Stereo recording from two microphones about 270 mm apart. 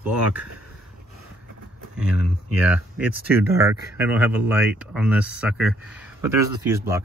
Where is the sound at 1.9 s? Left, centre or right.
Centre.